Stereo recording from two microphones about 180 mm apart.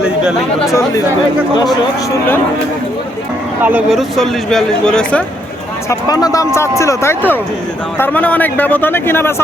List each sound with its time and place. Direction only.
0.0 s speech: 5° right (ahead or behind)
0.7 s speech: 15° left (ahead or behind)
3.6 s speech: 10° right (ahead or behind)
5.9 s speech: 20° left (ahead or behind)